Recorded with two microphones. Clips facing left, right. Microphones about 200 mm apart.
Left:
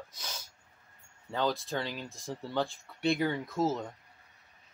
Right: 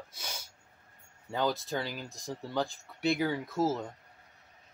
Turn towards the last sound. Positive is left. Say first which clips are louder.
# even
turn(degrees=-5)  # may be behind; listen again after turning